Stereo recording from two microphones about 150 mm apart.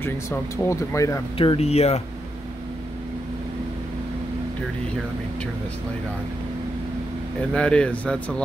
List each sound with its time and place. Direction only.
0.0 s speech: 15° left (ahead or behind)
1.4 s speech: 40° left (ahead or behind)
7.5 s speech: 5° left (ahead or behind)